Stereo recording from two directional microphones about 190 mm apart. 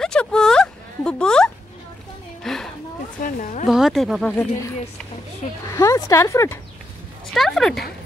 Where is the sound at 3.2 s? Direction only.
45° left (ahead or behind).